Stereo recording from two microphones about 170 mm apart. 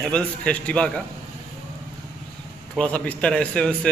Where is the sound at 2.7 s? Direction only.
5° left (ahead or behind).